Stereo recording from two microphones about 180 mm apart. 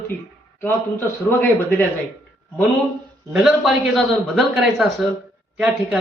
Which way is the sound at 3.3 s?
Centre (ahead or behind).